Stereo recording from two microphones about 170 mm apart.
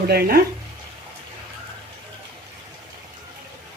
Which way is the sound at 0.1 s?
65° right (ahead or behind).